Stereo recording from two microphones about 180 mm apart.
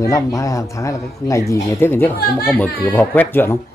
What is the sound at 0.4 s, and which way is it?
Speech, 15° left (ahead or behind).